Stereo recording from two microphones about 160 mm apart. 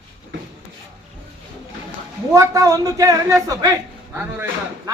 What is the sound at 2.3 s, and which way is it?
Speech, 20° right (ahead or behind).